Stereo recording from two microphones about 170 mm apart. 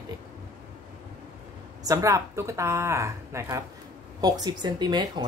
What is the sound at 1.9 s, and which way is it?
A woman's voice, 20° right (ahead or behind).